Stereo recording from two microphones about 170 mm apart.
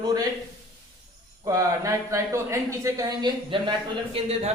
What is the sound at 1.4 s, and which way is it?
A man's voice, 20° right (ahead or behind).